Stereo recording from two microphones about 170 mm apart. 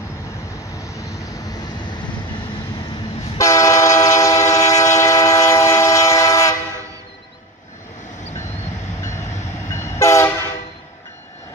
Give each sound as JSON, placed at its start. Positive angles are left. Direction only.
{"t": 0.7, "sound": "vehicle", "side_deg": 20}
{"t": 3.3, "sound": "train", "side_deg": 20}
{"t": 9.7, "sound": "train", "side_deg": 15}